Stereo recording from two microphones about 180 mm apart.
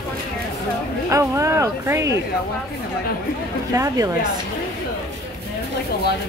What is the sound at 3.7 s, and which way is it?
Speech, 20° right (ahead or behind).